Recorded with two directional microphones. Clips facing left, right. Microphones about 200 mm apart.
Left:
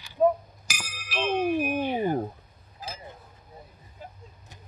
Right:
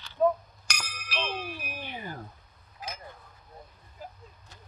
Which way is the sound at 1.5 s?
55° left (ahead or behind).